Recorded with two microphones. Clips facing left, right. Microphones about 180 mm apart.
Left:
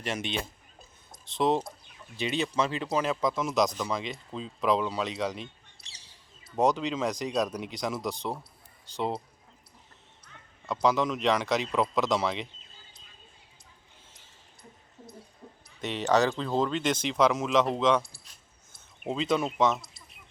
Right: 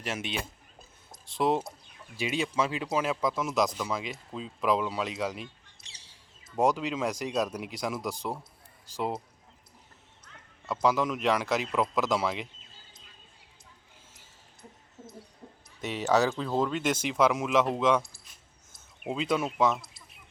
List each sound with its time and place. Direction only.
0.0 s speech: 5° right (ahead or behind)
5.7 s a sound: 35° left (ahead or behind)
6.6 s speech: 10° right (ahead or behind)
10.8 s speech: 5° right (ahead or behind)
15.8 s speech: 5° right (ahead or behind)
19.0 s speech: 5° right (ahead or behind)